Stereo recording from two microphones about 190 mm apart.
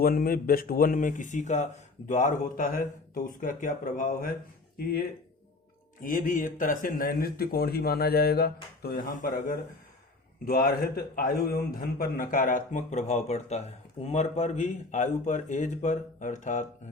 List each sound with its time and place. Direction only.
0.0 s a man's voice: 50° left (ahead or behind)